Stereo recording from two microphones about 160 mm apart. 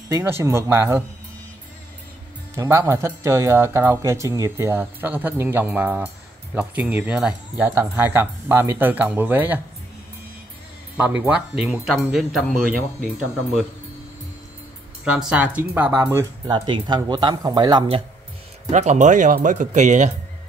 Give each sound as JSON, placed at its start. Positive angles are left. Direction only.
{"t": 0.1, "sound": "speech", "side_deg": -15}
{"t": 2.5, "sound": "speech", "side_deg": -20}
{"t": 11.0, "sound": "speech", "side_deg": -10}
{"t": 15.0, "sound": "speech", "side_deg": -5}
{"t": 16.5, "sound": "speech", "side_deg": -30}
{"t": 18.7, "sound": "speech", "side_deg": -45}